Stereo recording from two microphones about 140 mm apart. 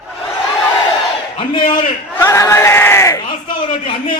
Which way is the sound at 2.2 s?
20° left (ahead or behind).